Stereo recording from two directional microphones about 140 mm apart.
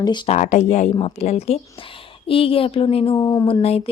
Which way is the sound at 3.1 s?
30° left (ahead or behind).